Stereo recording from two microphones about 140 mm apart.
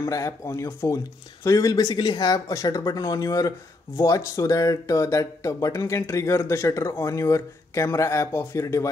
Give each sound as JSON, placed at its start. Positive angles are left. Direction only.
{"t": 0.0, "sound": "speech", "side_deg": 20}